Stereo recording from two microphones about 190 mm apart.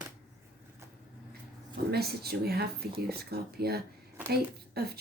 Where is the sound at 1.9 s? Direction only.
55° right (ahead or behind).